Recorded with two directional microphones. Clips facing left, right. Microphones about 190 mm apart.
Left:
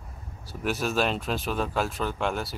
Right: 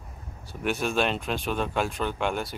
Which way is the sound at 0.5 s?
Centre (ahead or behind).